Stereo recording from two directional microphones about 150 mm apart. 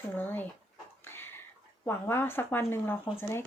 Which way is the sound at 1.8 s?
15° left (ahead or behind).